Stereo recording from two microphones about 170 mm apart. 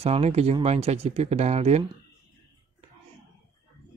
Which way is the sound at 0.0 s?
35° right (ahead or behind).